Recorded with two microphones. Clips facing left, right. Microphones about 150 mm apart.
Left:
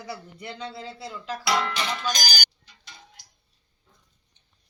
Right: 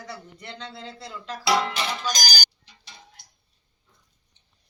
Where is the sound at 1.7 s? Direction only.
10° right (ahead or behind).